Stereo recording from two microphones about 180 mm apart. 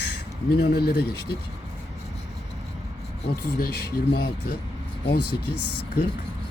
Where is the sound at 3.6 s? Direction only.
60° left (ahead or behind).